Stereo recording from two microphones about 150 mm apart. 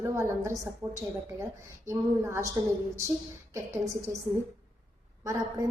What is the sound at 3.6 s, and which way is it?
Speech, 20° right (ahead or behind).